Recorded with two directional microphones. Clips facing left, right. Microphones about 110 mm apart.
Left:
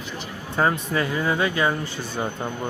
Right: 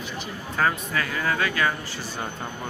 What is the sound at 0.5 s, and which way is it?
Speech, 25° left (ahead or behind).